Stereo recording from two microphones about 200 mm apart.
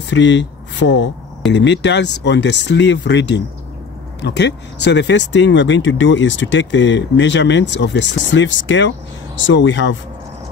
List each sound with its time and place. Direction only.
0.1 s speech: 65° left (ahead or behind)